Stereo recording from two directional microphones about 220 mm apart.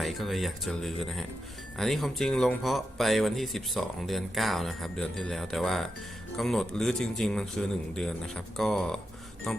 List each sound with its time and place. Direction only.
0.0 s speech: centre (ahead or behind)